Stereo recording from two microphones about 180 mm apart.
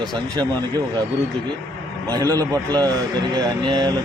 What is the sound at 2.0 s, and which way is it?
Speech, 20° right (ahead or behind).